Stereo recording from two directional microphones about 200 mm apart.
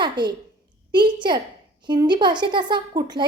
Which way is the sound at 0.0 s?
20° right (ahead or behind).